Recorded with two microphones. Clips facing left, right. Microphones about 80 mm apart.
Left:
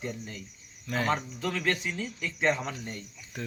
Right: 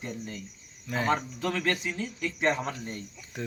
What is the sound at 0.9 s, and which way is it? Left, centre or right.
Speech, centre.